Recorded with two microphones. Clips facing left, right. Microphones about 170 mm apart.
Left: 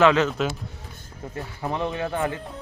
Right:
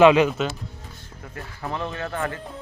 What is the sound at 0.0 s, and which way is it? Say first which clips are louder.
Speech: right 4 dB; 15° right (ahead or behind).